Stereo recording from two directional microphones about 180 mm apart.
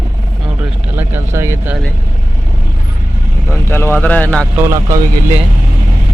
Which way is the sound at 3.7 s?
15° left (ahead or behind).